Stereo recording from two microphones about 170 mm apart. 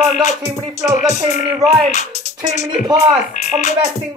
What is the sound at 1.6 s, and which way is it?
Music, 20° right (ahead or behind).